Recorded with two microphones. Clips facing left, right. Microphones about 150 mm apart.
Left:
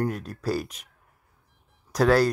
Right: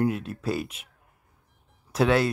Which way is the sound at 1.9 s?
Centre (ahead or behind).